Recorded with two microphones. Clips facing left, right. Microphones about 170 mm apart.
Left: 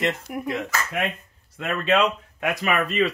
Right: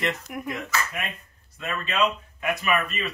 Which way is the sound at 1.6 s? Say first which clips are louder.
Left 5 dB; 70° left (ahead or behind).